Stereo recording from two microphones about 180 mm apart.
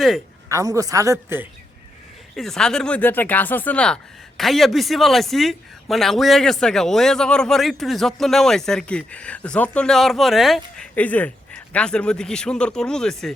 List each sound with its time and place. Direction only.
0.4 s a woman's voice: 20° right (ahead or behind)
2.3 s speech: centre (ahead or behind)